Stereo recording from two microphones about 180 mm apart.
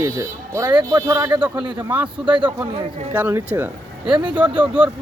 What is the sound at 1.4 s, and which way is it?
Speech, 10° right (ahead or behind).